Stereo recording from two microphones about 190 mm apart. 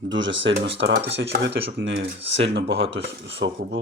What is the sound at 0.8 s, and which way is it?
Speech, 65° right (ahead or behind).